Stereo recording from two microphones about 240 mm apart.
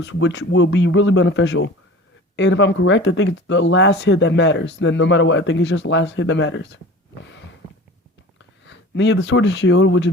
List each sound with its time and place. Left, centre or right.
0.0 s speech: left
7.2 s a sound: left
8.6 s speech: left